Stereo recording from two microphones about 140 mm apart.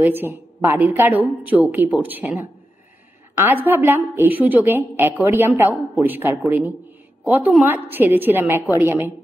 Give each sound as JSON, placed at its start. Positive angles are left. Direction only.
{"t": 0.0, "sound": "a woman's voice", "side_deg": -15}